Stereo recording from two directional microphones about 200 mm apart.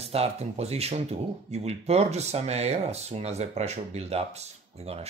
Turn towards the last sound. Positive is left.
turn(degrees=-30)  # may be behind; listen again after turning